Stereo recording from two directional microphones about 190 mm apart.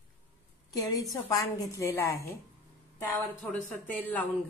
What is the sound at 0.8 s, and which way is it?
A woman's voice, 20° left (ahead or behind).